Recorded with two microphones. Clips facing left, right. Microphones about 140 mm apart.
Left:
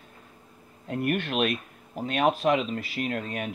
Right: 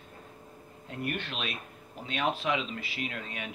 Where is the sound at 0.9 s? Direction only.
55° left (ahead or behind).